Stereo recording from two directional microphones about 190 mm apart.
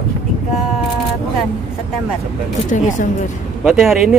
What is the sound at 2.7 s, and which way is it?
Speech, 45° left (ahead or behind).